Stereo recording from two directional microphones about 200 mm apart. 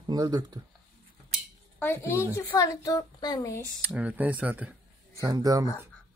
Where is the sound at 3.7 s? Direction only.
5° right (ahead or behind).